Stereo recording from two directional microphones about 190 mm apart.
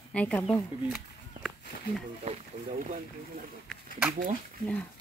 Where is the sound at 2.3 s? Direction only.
35° right (ahead or behind).